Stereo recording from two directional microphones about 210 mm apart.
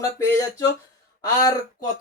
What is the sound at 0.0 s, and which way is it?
Speech, 15° left (ahead or behind).